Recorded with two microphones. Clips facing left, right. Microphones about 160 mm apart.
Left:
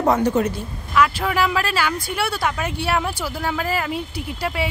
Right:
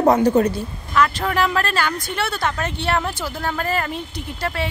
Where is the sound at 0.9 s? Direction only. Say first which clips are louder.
Even; 10° left (ahead or behind).